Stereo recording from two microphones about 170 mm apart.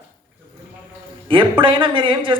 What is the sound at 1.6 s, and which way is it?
Speech, 30° right (ahead or behind).